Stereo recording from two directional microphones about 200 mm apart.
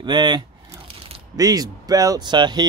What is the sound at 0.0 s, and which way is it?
Speech, 20° right (ahead or behind).